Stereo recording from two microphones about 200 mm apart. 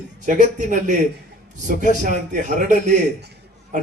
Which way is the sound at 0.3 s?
35° right (ahead or behind).